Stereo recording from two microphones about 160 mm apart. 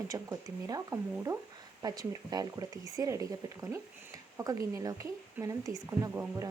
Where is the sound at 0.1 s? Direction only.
20° right (ahead or behind).